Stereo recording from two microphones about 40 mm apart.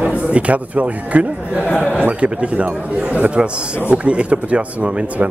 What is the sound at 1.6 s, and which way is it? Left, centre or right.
Speech, left.